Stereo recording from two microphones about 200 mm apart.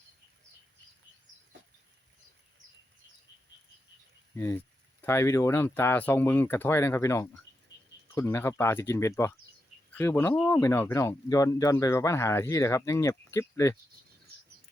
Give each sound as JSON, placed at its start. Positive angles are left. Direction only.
{"t": 4.4, "sound": "speech", "side_deg": 15}